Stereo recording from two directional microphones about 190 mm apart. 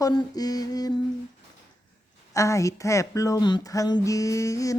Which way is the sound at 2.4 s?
15° left (ahead or behind).